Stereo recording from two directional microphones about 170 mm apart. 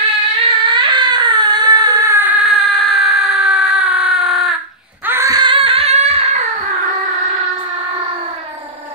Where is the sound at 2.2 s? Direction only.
5° right (ahead or behind).